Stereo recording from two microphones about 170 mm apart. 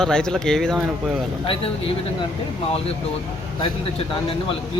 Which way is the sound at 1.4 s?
35° left (ahead or behind).